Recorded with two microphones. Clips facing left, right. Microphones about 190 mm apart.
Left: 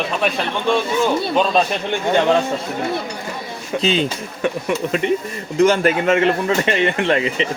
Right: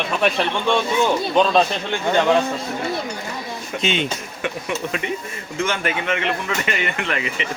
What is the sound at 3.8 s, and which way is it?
Speech, 35° left (ahead or behind).